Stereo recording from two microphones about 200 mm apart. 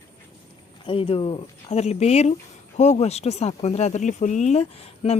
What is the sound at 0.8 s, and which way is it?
Speech, 25° left (ahead or behind).